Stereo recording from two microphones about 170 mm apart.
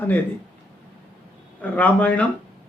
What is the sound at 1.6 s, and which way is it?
Speech, 10° left (ahead or behind).